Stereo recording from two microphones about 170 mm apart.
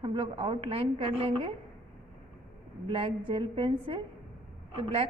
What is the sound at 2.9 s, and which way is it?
A woman's voice, 30° right (ahead or behind).